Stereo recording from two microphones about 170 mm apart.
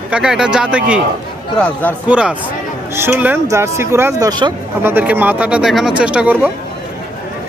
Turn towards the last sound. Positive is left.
turn(degrees=-10)  # may be behind; listen again after turning